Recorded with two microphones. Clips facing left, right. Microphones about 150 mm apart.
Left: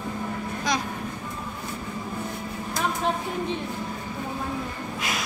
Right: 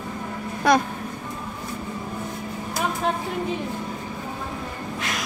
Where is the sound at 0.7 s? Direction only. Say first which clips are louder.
Right 9 dB; 60° right (ahead or behind).